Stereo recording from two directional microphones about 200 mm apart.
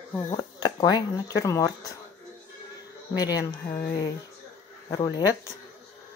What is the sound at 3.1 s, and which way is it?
Speech, 20° left (ahead or behind).